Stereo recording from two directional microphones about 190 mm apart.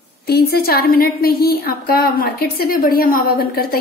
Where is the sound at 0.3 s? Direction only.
55° left (ahead or behind).